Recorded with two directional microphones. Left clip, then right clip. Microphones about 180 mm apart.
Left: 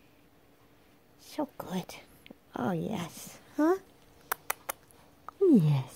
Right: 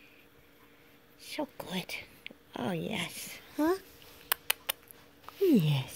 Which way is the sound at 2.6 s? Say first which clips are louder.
Left 1 dB; 15° left (ahead or behind).